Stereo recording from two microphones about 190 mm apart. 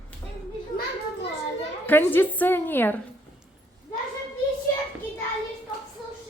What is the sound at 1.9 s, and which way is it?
A woman's voice, 10° left (ahead or behind).